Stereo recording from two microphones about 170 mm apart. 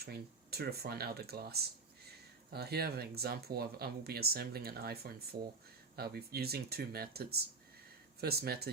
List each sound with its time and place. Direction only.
0.0 s speech: 65° right (ahead or behind)